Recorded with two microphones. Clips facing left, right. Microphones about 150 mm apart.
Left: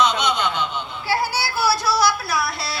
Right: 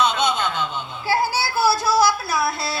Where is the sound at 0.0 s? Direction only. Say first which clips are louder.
Even; 50° right (ahead or behind).